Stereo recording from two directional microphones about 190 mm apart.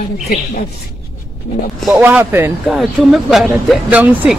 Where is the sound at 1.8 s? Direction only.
5° right (ahead or behind).